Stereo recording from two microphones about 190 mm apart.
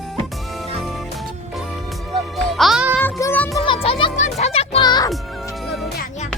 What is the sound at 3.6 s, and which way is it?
Music, 30° left (ahead or behind).